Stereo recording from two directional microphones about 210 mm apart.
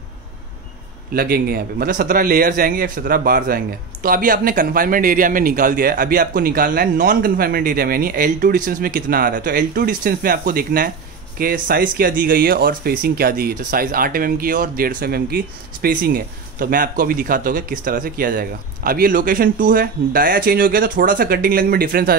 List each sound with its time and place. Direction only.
1.1 s speech: 45° right (ahead or behind)